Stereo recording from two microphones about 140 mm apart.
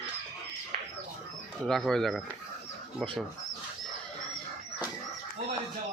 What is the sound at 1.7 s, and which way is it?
Speech, 5° left (ahead or behind).